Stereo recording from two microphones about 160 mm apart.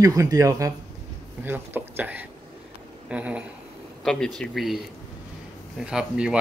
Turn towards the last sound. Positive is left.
turn(degrees=-5)  # may be behind; listen again after turning